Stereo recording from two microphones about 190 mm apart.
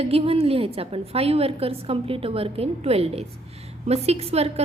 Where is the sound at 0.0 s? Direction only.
30° right (ahead or behind).